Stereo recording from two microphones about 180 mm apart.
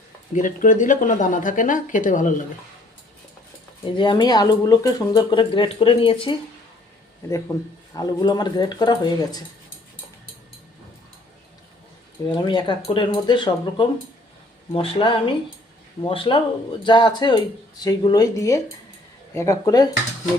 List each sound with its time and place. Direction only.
0.3 s speech: 45° left (ahead or behind)
3.8 s speech: 25° left (ahead or behind)
7.3 s speech: 15° left (ahead or behind)
12.4 s speech: 25° left (ahead or behind)